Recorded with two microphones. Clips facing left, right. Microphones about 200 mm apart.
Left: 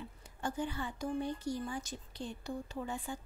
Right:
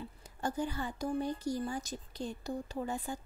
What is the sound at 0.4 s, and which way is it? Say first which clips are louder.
Speech: right 2 dB; 40° right (ahead or behind).